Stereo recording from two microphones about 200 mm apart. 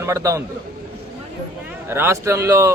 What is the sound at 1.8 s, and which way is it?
Speech, 10° right (ahead or behind).